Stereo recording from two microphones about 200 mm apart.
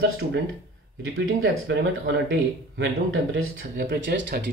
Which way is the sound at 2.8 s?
90° right.